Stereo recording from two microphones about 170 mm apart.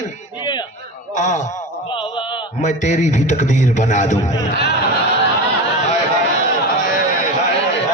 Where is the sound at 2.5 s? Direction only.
45° left (ahead or behind).